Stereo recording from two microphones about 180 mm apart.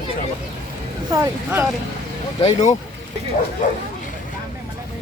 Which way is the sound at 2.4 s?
40° left (ahead or behind).